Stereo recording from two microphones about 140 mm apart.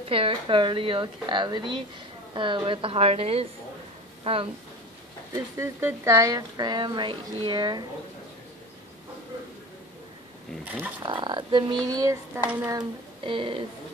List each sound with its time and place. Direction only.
0.1 s a woman's voice: 40° right (ahead or behind)
5.3 s speech: 20° right (ahead or behind)
10.6 s speech: 15° right (ahead or behind)
11.0 s a woman's voice: 35° right (ahead or behind)
12.4 s speech: 15° right (ahead or behind)
12.7 s a woman's voice: 35° right (ahead or behind)